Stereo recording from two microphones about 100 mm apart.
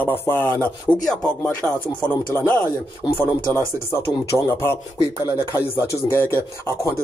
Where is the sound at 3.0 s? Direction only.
55° left (ahead or behind).